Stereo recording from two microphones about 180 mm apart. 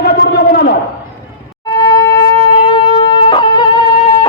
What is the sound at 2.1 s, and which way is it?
Shofar, 25° left (ahead or behind).